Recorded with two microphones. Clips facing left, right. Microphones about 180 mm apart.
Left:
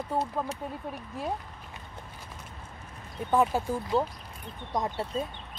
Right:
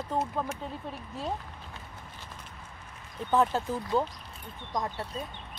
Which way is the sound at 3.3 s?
10° left (ahead or behind).